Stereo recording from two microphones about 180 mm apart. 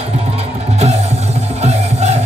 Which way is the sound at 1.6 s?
35° right (ahead or behind).